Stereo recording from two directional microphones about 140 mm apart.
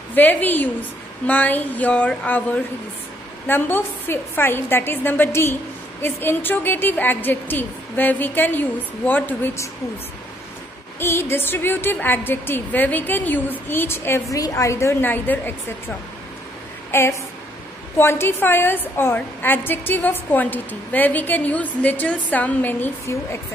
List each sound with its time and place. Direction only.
0.1 s a woman's voice: 10° left (ahead or behind)
11.0 s a woman's voice: 15° left (ahead or behind)
17.9 s a woman's voice: 15° left (ahead or behind)